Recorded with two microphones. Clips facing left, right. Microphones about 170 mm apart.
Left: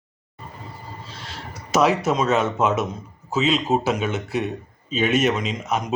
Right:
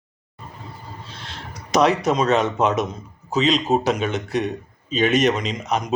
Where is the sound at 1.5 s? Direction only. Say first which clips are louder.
Right 1 dB; 5° left (ahead or behind).